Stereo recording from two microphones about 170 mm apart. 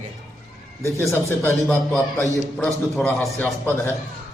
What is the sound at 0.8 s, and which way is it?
Speech, 15° left (ahead or behind).